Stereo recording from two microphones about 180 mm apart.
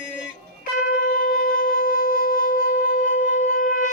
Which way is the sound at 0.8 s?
50° left (ahead or behind).